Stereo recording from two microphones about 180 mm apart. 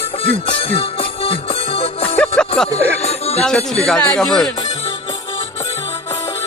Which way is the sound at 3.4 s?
5° left (ahead or behind).